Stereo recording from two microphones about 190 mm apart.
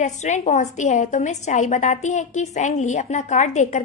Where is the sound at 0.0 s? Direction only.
40° left (ahead or behind).